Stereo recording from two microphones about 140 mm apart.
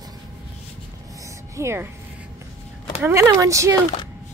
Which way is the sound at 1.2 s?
20° right (ahead or behind).